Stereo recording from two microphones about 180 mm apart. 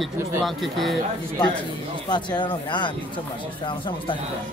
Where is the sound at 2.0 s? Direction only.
25° left (ahead or behind).